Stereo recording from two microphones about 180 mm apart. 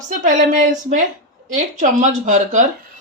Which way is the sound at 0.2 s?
45° right (ahead or behind).